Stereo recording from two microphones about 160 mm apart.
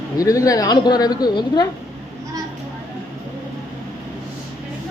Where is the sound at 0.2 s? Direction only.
20° left (ahead or behind).